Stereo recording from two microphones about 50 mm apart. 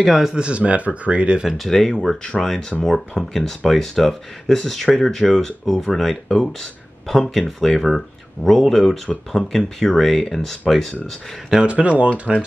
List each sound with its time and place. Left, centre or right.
0.0 s speech: centre
0.3 s speech: right
1.6 s speech: centre
7.1 s speech: centre
11.6 s speech: right